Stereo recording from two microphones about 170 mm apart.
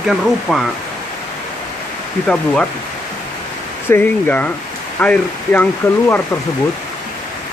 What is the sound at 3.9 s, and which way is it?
Speech, 10° left (ahead or behind).